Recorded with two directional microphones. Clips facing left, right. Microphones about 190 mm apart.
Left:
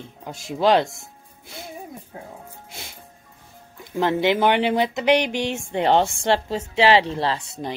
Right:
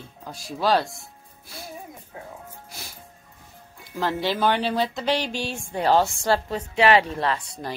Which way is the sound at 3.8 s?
20° left (ahead or behind).